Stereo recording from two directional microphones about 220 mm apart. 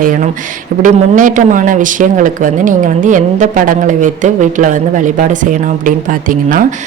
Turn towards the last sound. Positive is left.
turn(degrees=-40)  # may be behind; listen again after turning